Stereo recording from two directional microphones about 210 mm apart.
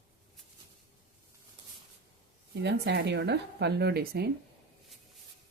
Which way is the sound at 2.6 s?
50° right (ahead or behind).